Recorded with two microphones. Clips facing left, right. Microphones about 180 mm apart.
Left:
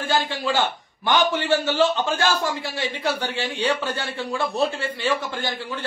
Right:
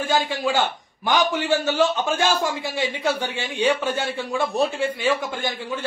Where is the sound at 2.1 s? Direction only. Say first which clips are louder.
Right 1 dB; 15° right (ahead or behind).